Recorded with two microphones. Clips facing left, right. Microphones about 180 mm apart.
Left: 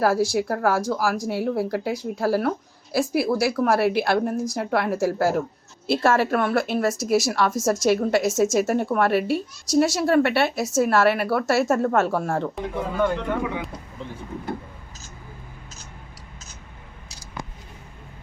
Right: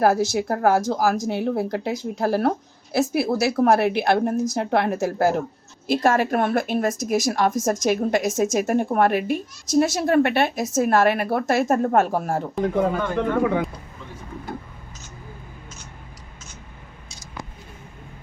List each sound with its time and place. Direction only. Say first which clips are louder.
0.0 s speech: right 1 dB; 20° right (ahead or behind)
12.6 s speech: right 4 dB; 50° right (ahead or behind)